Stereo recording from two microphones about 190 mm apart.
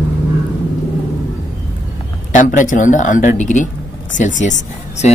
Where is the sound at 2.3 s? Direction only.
40° left (ahead or behind).